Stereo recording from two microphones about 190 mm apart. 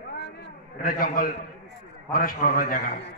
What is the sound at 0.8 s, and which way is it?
A man's voice, 50° left (ahead or behind).